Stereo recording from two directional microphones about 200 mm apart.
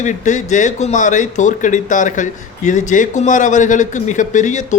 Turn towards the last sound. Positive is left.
turn(degrees=35)  # may be behind; listen again after turning